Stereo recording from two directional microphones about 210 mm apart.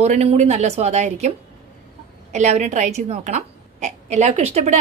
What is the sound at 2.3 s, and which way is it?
A woman's voice, 35° right (ahead or behind).